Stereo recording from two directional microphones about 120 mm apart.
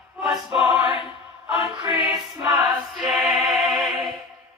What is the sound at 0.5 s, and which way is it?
Speech, 5° right (ahead or behind).